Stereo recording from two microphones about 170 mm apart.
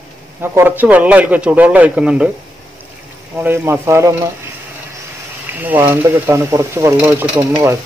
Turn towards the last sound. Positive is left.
turn(degrees=-15)  # may be behind; listen again after turning